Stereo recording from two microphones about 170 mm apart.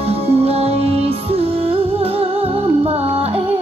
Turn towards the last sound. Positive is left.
turn(degrees=-35)  # may be behind; listen again after turning